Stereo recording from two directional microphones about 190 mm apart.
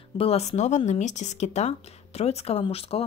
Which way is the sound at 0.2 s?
35° left (ahead or behind).